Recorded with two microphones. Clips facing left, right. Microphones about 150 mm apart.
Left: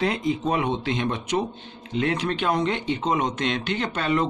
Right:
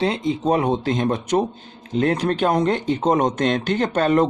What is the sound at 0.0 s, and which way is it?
A man's voice, 30° right (ahead or behind).